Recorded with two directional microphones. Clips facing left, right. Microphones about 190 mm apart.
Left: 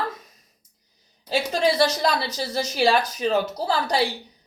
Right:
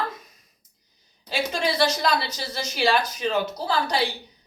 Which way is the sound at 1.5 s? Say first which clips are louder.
Left 5 dB; 40° left (ahead or behind).